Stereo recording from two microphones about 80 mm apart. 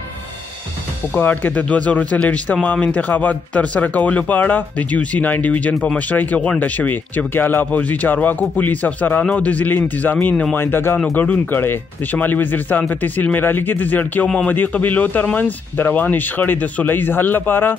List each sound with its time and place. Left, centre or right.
1.1 s speech: left